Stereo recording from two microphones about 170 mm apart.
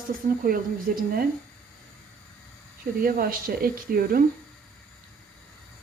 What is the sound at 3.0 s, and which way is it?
Speech, 55° right (ahead or behind).